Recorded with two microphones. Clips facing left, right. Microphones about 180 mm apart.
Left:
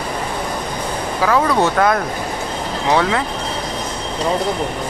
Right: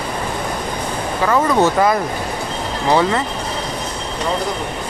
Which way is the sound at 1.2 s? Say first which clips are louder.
Right 1 dB; centre (ahead or behind).